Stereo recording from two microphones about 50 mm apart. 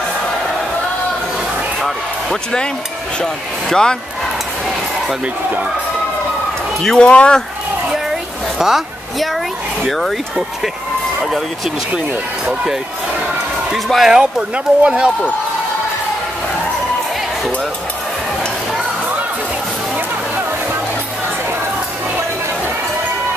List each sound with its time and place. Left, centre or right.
1.8 s a sound: centre
3.6 s speech: centre
5.2 s speech: right
6.8 s speech: centre
7.1 s speech: left
7.9 s a sound: centre
9.8 s speech: centre
13.9 s speech: centre
14.5 s speech: right